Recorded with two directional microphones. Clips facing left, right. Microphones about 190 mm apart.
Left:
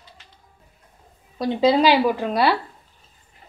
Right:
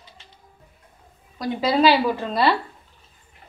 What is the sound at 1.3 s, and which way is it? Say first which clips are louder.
A woman's voice: left 3 dB; 20° left (ahead or behind).